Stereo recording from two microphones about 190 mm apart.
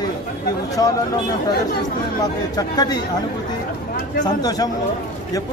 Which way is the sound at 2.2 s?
20° left (ahead or behind).